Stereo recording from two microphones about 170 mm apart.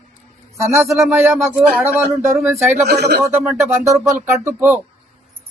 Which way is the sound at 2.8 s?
75° right (ahead or behind).